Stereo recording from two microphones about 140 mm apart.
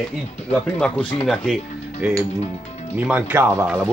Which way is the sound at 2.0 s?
5° right (ahead or behind).